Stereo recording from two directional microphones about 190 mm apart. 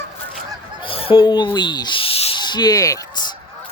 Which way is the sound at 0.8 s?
30° left (ahead or behind).